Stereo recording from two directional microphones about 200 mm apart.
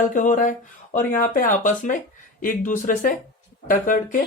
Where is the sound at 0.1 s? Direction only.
40° left (ahead or behind).